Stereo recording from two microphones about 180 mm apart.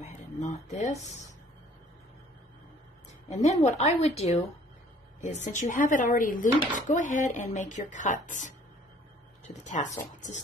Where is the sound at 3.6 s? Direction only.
35° left (ahead or behind).